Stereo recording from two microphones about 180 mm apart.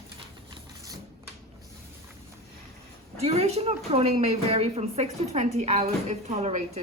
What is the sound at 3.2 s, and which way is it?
A woman's voice, 35° right (ahead or behind).